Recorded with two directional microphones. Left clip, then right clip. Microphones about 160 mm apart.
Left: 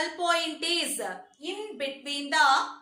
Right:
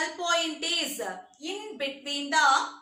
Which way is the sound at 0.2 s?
15° left (ahead or behind).